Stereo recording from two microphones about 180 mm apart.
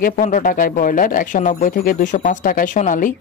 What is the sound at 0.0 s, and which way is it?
Speech, 45° left (ahead or behind).